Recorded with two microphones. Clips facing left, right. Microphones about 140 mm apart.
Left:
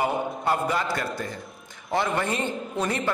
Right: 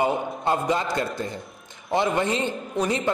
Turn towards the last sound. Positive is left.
turn(degrees=-15)  # may be behind; listen again after turning